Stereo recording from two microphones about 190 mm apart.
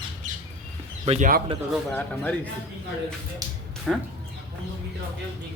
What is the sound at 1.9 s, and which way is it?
Speech, 5° left (ahead or behind).